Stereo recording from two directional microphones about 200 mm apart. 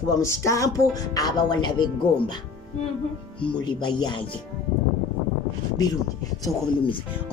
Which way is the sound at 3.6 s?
25° left (ahead or behind).